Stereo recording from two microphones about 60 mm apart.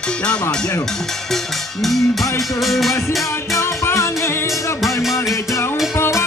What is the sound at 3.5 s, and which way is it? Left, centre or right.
Music, left.